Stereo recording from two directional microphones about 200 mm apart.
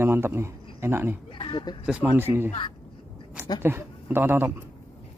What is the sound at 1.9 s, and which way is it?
Speech, 10° right (ahead or behind).